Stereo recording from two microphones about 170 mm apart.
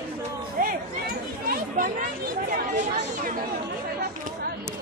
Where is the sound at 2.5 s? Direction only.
55° right (ahead or behind).